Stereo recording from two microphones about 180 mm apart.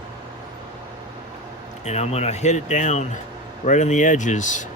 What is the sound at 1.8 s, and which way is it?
Speech, 35° left (ahead or behind).